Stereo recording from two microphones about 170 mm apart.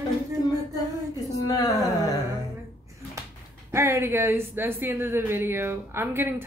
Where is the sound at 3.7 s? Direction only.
15° right (ahead or behind).